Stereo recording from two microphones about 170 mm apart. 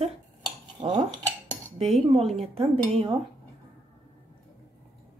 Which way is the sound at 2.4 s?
35° right (ahead or behind).